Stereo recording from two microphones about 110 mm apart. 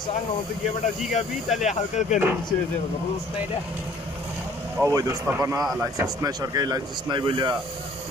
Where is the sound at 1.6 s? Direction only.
90° left.